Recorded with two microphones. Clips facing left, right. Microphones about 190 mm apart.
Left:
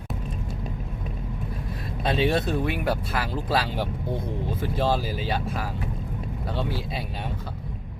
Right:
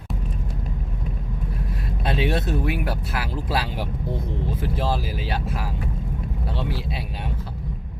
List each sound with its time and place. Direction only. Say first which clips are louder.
2.0 s speech: left 1 dB; 5° right (ahead or behind)